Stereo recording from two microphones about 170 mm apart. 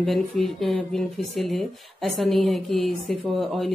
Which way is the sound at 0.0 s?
Centre (ahead or behind).